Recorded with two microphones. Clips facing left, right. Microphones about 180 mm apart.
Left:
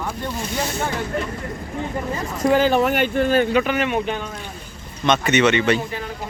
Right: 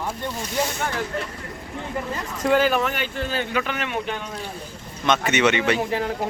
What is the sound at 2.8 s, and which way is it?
Speech, 55° left (ahead or behind).